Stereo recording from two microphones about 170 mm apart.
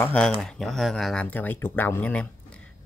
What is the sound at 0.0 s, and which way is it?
Speech, 5° left (ahead or behind).